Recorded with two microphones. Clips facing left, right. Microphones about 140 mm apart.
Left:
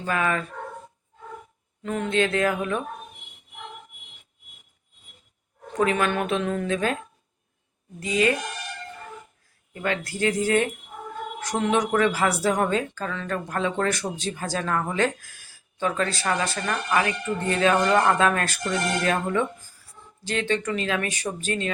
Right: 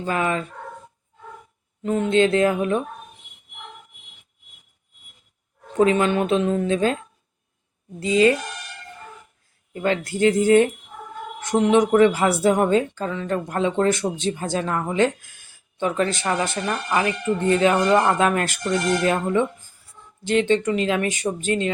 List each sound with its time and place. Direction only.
0.0 s a woman's voice: 25° right (ahead or behind)
1.8 s a woman's voice: 25° right (ahead or behind)
5.7 s a woman's voice: 25° right (ahead or behind)
7.9 s a woman's voice: 25° right (ahead or behind)
9.7 s a woman's voice: 25° right (ahead or behind)